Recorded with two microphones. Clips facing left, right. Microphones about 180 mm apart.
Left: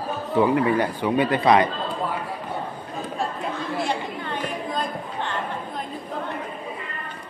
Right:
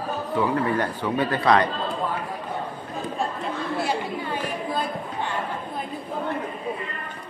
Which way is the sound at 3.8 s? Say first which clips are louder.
Right 1 dB; 10° right (ahead or behind).